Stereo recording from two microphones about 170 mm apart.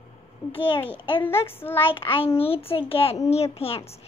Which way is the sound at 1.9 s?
30° left (ahead or behind).